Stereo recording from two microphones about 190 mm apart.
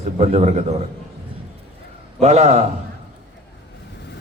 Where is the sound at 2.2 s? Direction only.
35° right (ahead or behind).